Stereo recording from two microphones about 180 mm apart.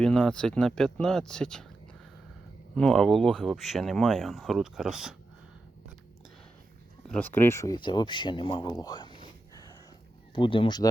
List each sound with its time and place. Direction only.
0.0 s speech: 5° left (ahead or behind)
7.1 s speech: 10° left (ahead or behind); by 8.7 s 30° left (ahead or behind)
8.8 s a sound: 25° left (ahead or behind)
10.3 s speech: 25° left (ahead or behind)